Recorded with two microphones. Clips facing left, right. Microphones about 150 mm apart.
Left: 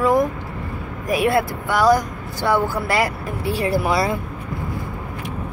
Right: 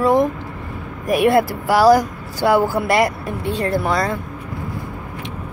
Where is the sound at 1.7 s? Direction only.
30° right (ahead or behind).